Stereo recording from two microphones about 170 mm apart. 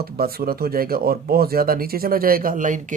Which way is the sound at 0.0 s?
65° right (ahead or behind).